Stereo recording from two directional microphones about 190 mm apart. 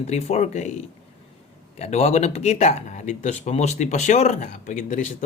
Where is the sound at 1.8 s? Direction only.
35° left (ahead or behind).